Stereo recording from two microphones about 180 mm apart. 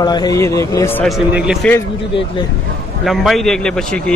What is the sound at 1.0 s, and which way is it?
Speech, 5° right (ahead or behind).